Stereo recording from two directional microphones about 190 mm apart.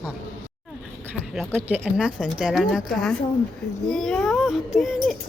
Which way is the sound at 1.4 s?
Centre (ahead or behind).